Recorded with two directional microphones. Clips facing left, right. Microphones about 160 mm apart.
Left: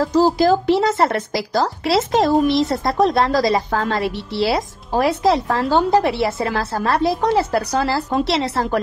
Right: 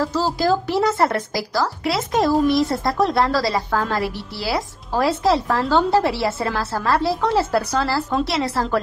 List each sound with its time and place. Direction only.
0.0 s speech: 20° left (ahead or behind)